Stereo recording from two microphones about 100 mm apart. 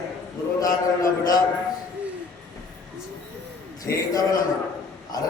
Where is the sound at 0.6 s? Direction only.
35° left (ahead or behind).